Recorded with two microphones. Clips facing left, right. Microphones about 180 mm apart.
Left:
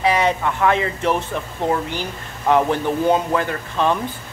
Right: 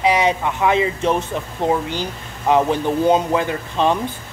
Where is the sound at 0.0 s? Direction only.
15° right (ahead or behind).